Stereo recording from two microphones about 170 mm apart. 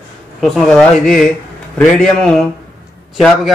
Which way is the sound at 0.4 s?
5° left (ahead or behind).